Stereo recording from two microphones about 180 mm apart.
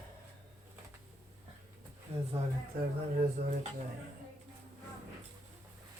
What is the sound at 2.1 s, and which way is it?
Speech, 35° right (ahead or behind).